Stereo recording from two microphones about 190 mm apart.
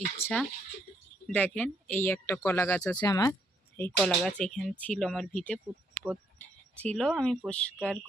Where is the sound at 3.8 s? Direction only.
5° left (ahead or behind).